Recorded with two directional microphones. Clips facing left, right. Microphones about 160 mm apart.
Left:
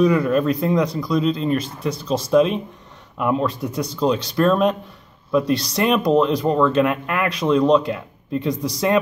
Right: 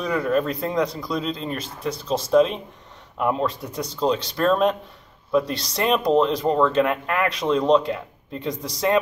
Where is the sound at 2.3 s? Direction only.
30° right (ahead or behind).